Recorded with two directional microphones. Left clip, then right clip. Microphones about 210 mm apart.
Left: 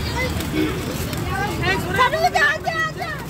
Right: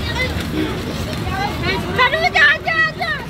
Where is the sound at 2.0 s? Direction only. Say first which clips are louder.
Right 4 dB; 30° left (ahead or behind).